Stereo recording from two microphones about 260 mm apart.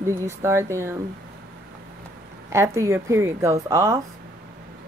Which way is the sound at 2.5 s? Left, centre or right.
Centre.